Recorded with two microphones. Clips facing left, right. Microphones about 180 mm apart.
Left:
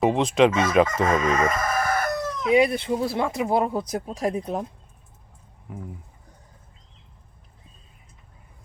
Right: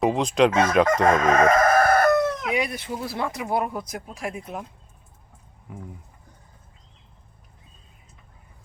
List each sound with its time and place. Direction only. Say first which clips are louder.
0.0 s fowl: left 1 dB; centre (ahead or behind)
1.0 s chicken: right 4 dB; 55° right (ahead or behind)
2.5 s speech: left 7 dB; 30° left (ahead or behind)
5.7 s fowl: left 2 dB; centre (ahead or behind)